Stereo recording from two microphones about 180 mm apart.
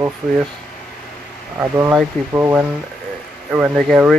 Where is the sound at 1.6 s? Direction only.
15° right (ahead or behind).